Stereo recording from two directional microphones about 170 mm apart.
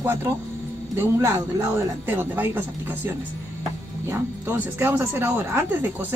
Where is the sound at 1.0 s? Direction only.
15° right (ahead or behind).